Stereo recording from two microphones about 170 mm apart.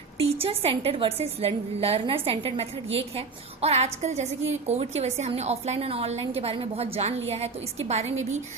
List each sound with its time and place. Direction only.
0.2 s a woman's voice: 35° right (ahead or behind)